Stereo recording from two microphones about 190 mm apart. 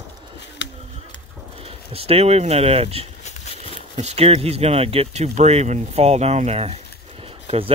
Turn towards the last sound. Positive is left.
turn(degrees=-30)  # may be behind; listen again after turning